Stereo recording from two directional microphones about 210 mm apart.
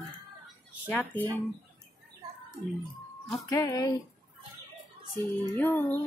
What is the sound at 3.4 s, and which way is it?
Speech, 15° left (ahead or behind).